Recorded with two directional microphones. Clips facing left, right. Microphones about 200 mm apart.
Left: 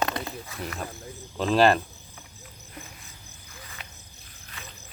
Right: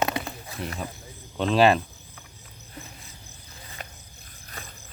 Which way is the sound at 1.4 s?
Centre (ahead or behind).